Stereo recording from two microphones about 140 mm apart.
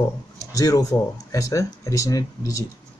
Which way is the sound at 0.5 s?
25° left (ahead or behind).